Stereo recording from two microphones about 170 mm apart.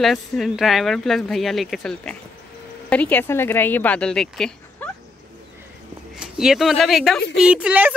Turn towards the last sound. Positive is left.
turn(degrees=-10)  # may be behind; listen again after turning